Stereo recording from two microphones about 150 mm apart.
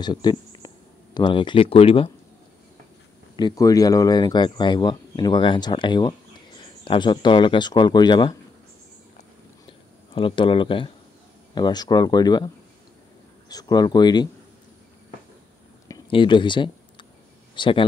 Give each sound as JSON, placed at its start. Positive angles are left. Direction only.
{"t": 0.0, "sound": "speech", "side_deg": 30}
{"t": 3.3, "sound": "speech", "side_deg": 25}
{"t": 9.7, "sound": "a sound", "side_deg": 35}
{"t": 11.5, "sound": "speech", "side_deg": 30}
{"t": 13.5, "sound": "speech", "side_deg": 25}
{"t": 16.1, "sound": "speech", "side_deg": 35}